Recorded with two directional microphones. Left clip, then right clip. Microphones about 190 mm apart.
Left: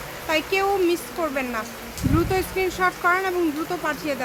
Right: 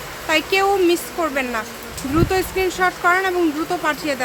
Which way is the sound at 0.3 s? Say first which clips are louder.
Right 5 dB; 10° right (ahead or behind).